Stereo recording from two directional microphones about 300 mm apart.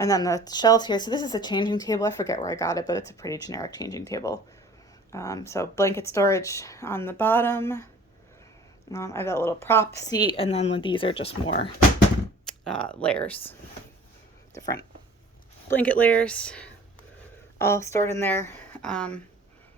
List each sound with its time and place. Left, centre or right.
0.0 s speech: centre
8.9 s speech: centre
11.4 s speech: left
12.6 s speech: centre